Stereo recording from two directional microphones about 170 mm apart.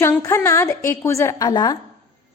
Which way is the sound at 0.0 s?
15° left (ahead or behind).